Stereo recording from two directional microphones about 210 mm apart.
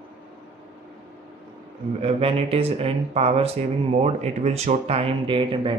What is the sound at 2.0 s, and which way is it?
Speech, 30° right (ahead or behind).